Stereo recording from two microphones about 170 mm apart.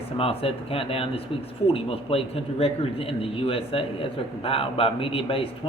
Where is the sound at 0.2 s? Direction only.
35° left (ahead or behind).